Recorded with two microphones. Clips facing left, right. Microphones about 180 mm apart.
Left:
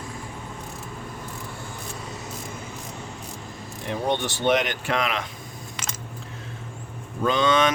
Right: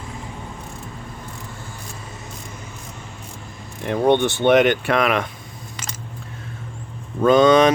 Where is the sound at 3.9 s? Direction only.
60° right (ahead or behind).